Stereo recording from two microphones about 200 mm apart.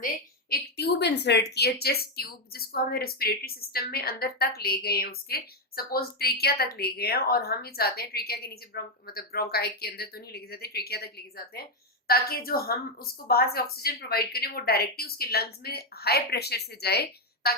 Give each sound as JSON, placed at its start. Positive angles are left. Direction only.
{"t": 0.5, "sound": "a woman's voice", "side_deg": 55}